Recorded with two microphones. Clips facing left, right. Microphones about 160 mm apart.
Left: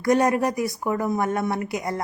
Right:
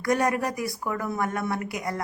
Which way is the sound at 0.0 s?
25° left (ahead or behind).